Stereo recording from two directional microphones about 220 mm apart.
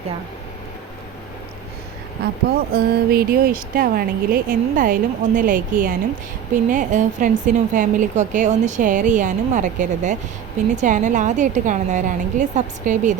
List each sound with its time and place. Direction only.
2.7 s speech: 45° right (ahead or behind)